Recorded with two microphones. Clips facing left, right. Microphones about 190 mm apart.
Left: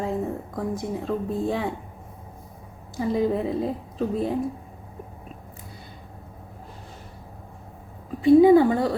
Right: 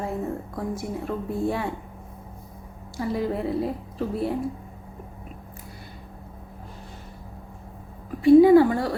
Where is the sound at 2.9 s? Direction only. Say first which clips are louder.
Left 3 dB; 20° left (ahead or behind).